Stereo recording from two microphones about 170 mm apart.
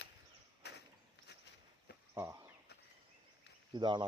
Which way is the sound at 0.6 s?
75° left (ahead or behind).